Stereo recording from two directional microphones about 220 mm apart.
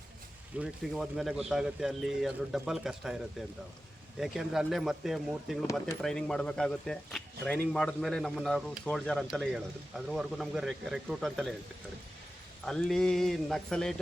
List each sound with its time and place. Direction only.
0.6 s speech: centre (ahead or behind)
4.2 s speech: centre (ahead or behind)
12.6 s speech: centre (ahead or behind)